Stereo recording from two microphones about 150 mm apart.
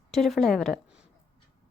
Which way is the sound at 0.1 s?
5° left (ahead or behind).